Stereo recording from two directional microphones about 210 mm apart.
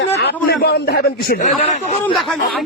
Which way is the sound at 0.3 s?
50° left (ahead or behind).